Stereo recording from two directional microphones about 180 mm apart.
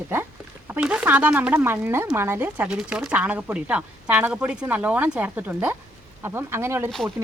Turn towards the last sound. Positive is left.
turn(degrees=-15)  # may be behind; listen again after turning